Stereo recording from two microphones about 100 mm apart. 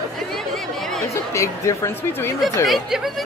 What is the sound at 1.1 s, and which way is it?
Speech, 30° left (ahead or behind).